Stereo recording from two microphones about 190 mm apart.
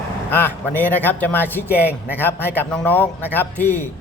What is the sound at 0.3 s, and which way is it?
A man's voice, 10° left (ahead or behind).